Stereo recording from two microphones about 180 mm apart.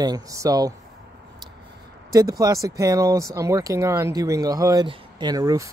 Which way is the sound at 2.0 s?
20° right (ahead or behind).